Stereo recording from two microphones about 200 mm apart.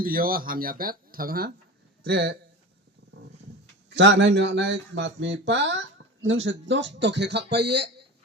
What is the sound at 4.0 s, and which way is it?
Speech, 60° right (ahead or behind).